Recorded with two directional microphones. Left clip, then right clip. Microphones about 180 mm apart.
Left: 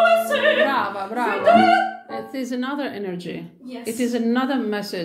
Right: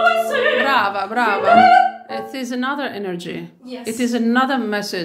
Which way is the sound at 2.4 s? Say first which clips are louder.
Right 3 dB; 25° right (ahead or behind).